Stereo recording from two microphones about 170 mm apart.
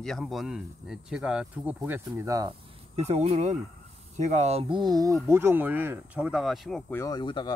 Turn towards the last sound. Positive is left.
turn(degrees=25)  # may be behind; listen again after turning